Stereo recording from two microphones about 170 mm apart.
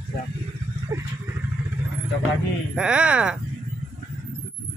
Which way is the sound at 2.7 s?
5° right (ahead or behind).